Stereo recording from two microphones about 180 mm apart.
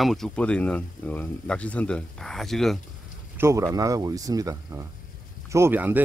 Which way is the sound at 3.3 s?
15° right (ahead or behind).